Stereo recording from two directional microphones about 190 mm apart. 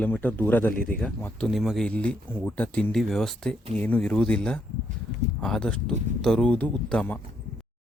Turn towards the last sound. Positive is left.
turn(degrees=5)  # may be behind; listen again after turning